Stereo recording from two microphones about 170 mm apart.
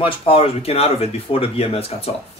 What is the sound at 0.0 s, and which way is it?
Speech, 35° left (ahead or behind).